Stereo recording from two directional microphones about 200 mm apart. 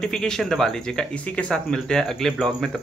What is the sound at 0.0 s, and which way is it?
Speech, 5° left (ahead or behind).